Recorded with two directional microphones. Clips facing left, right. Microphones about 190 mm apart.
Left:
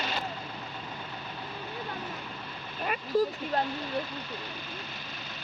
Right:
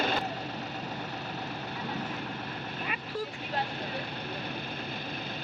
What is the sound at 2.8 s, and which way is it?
Vehicle, 40° left (ahead or behind).